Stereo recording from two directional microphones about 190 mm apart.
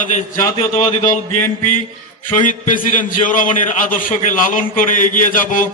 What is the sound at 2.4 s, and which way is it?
A man's voice, 45° left (ahead or behind).